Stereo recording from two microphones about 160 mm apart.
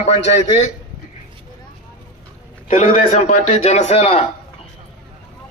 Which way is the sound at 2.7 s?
50° left (ahead or behind).